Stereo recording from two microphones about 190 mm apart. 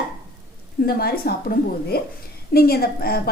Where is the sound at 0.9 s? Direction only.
55° left (ahead or behind).